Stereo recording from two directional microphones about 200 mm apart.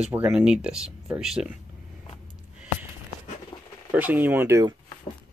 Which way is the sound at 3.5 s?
20° left (ahead or behind).